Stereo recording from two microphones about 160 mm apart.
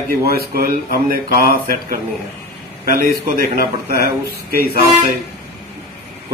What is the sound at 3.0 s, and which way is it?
Speech, 60° right (ahead or behind).